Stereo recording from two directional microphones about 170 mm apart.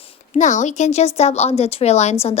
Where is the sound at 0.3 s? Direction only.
45° left (ahead or behind).